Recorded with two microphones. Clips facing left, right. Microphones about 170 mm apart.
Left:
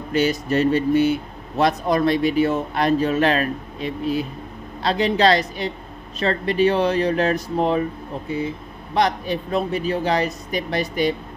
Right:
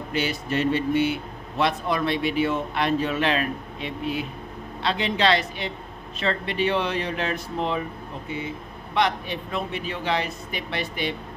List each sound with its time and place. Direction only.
0.1 s speech: 40° left (ahead or behind)